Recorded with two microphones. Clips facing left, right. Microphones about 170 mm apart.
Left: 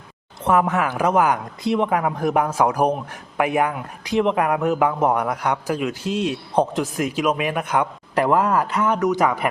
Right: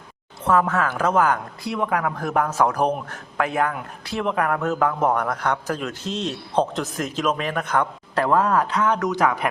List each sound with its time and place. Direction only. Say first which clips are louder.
0.4 s speech: left 1 dB; 15° left (ahead or behind)